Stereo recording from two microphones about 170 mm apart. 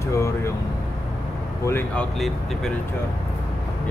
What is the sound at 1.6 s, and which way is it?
Speech, 15° left (ahead or behind).